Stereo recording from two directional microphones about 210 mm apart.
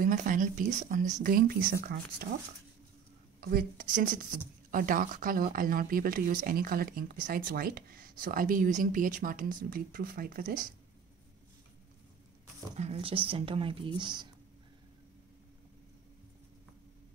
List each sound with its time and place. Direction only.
0.0 s speech: 40° right (ahead or behind)
3.3 s speech: 50° right (ahead or behind)
12.7 s speech: 30° right (ahead or behind)